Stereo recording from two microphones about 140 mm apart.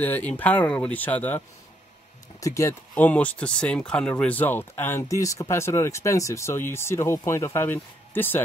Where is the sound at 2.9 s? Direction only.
10° left (ahead or behind).